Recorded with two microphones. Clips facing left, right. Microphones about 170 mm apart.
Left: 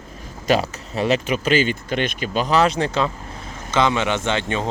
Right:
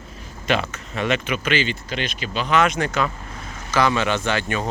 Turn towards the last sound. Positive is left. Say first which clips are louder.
# left 1 dB
turn(degrees=25)  # may be behind; listen again after turning